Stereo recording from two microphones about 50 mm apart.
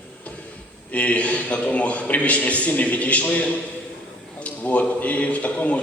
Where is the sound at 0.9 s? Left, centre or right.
Left.